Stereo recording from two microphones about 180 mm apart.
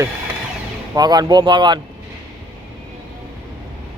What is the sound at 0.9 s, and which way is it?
Speech, 20° right (ahead or behind).